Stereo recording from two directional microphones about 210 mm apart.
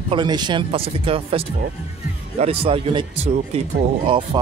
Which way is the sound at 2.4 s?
30° right (ahead or behind).